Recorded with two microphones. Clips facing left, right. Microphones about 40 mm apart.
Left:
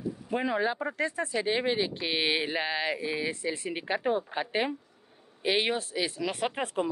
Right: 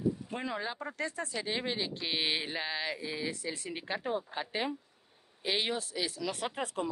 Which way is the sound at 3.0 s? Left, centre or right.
Left.